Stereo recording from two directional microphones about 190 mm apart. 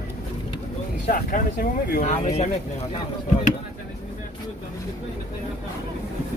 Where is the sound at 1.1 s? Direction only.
45° left (ahead or behind).